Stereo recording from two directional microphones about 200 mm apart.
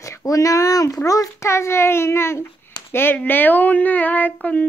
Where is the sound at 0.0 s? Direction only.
15° left (ahead or behind).